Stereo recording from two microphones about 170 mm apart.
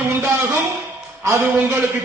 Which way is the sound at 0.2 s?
15° right (ahead or behind).